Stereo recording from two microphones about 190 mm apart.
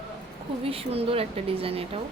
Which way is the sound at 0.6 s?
30° right (ahead or behind).